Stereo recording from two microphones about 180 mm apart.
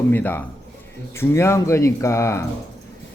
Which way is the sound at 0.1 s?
10° left (ahead or behind).